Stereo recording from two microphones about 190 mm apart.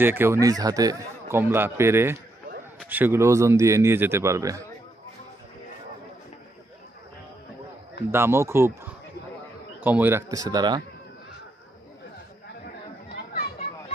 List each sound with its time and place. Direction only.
0.0 s a man's voice: 10° right (ahead or behind)
8.1 s a man's voice: 15° right (ahead or behind)